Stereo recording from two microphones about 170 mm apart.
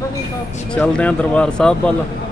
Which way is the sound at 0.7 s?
5° left (ahead or behind).